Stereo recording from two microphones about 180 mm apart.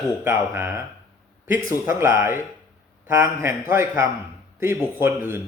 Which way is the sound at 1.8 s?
15° right (ahead or behind).